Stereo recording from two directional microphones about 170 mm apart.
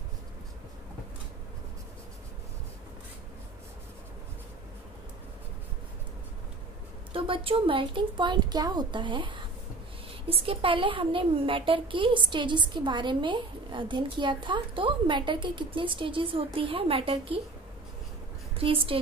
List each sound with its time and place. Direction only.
7.1 s a woman's voice: 30° right (ahead or behind)
18.6 s speech: 30° right (ahead or behind)